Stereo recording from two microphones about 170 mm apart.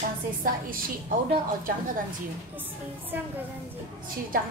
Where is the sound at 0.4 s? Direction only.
55° right (ahead or behind).